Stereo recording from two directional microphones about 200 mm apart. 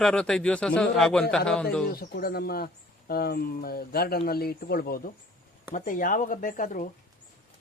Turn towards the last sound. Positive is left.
turn(degrees=40)  # may be behind; listen again after turning